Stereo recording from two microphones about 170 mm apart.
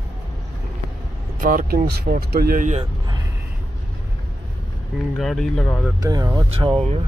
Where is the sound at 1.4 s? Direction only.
55° right (ahead or behind).